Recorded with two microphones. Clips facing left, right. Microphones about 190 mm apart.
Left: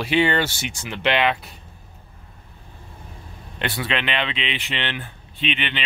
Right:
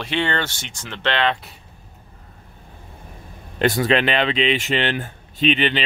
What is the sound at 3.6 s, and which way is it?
Speech, 40° right (ahead or behind).